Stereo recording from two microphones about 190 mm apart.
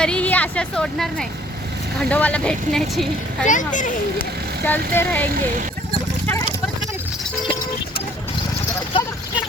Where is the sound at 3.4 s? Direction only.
40° left (ahead or behind).